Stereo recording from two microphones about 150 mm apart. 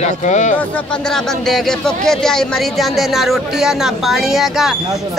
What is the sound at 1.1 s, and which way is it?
Speech, centre (ahead or behind).